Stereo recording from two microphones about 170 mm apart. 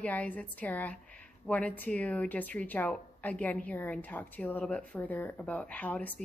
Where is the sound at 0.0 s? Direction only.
10° left (ahead or behind).